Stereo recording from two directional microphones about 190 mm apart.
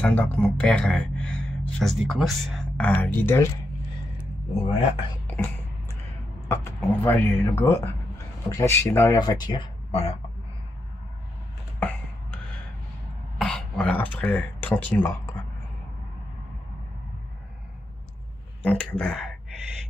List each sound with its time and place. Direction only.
0.0 s speech: 10° left (ahead or behind)
4.6 s speech: 30° left (ahead or behind)
5.2 s a sound: 10° left (ahead or behind)
6.5 s speech: 15° left (ahead or behind); by 10.1 s 30° left (ahead or behind)
13.4 s speech: 5° left (ahead or behind)
18.6 s speech: 5° left (ahead or behind)